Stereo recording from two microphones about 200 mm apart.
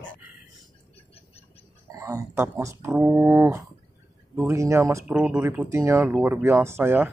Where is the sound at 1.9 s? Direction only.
15° right (ahead or behind).